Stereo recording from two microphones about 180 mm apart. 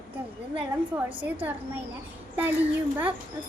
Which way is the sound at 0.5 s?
10° right (ahead or behind).